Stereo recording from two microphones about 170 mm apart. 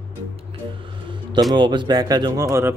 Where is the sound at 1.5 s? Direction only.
25° right (ahead or behind).